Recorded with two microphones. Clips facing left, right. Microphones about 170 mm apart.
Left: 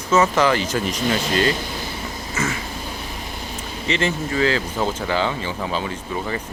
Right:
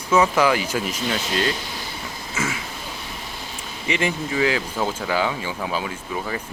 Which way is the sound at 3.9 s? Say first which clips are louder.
Left 1 dB; 10° right (ahead or behind).